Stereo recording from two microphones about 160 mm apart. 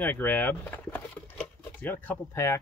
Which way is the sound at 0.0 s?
10° left (ahead or behind).